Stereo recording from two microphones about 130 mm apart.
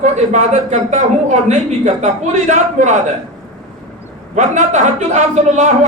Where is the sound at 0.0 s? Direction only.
65° right (ahead or behind).